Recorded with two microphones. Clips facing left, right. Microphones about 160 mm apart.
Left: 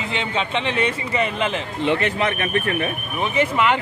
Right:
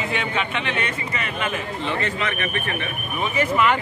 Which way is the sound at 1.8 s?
65° left (ahead or behind).